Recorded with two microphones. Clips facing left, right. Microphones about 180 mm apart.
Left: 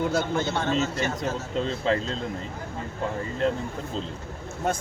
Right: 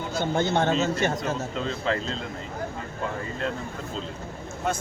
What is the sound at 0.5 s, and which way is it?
Speech, 55° right (ahead or behind).